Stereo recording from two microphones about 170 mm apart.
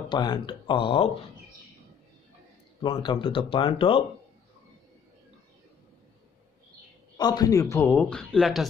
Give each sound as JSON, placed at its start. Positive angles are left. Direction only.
{"t": 0.1, "sound": "speech", "side_deg": 25}
{"t": 2.8, "sound": "speech", "side_deg": 30}
{"t": 7.2, "sound": "speech", "side_deg": 25}